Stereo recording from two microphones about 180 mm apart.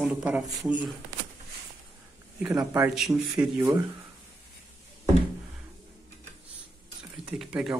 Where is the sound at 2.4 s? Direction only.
15° right (ahead or behind).